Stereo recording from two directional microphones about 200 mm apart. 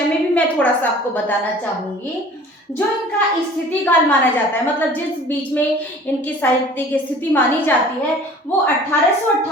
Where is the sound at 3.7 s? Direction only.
10° left (ahead or behind).